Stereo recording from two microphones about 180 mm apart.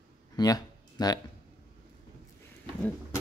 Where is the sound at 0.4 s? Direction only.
20° left (ahead or behind).